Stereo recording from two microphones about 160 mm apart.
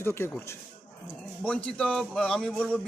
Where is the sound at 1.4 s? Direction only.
5° left (ahead or behind).